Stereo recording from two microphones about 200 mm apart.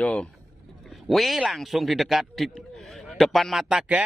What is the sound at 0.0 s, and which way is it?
A man's voice, 5° left (ahead or behind).